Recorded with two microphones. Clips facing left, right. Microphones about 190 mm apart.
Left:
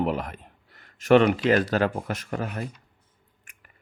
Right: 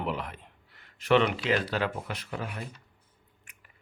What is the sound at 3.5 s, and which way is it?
Chewing, 50° left (ahead or behind).